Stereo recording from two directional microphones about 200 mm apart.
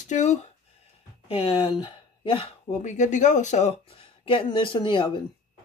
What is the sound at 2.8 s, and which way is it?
Speech, 35° left (ahead or behind).